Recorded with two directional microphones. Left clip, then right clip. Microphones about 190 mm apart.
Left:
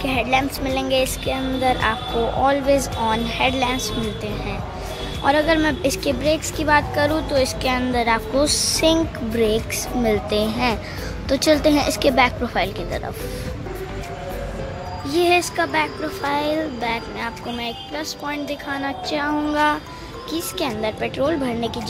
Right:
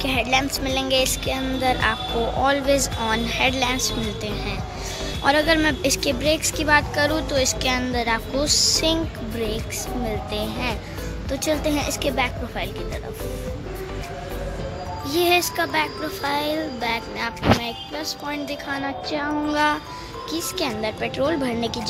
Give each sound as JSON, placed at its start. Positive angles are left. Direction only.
{"t": 0.0, "sound": "speech", "side_deg": 0}
{"t": 5.2, "sound": "a woman's voice", "side_deg": 0}
{"t": 15.0, "sound": "speech", "side_deg": 0}